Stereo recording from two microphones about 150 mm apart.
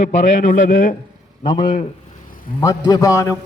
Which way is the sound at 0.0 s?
60° left (ahead or behind).